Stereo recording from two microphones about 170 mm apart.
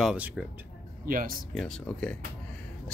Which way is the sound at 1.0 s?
55° right (ahead or behind).